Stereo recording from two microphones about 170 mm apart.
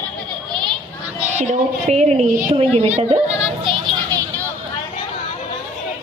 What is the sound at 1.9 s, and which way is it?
A woman's voice, 40° right (ahead or behind).